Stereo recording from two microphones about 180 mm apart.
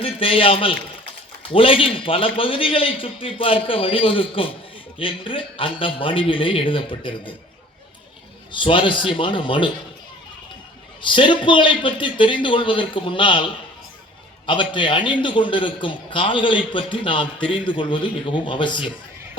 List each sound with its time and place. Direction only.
0.0 s a man's voice: 30° left (ahead or behind)
8.5 s a man's voice: 30° left (ahead or behind)
11.0 s a man's voice: 30° left (ahead or behind)